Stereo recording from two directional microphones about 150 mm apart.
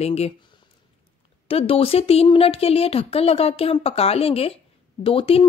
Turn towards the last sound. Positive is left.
turn(degrees=40)  # may be behind; listen again after turning